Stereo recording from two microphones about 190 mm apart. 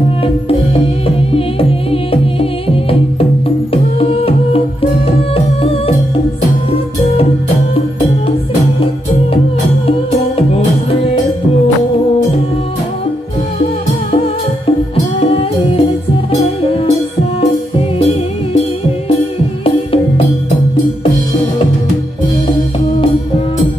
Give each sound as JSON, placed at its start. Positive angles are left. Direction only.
{"t": 1.0, "sound": "music", "side_deg": 30}
{"t": 15.1, "sound": "music", "side_deg": 30}
{"t": 19.6, "sound": "music", "side_deg": 30}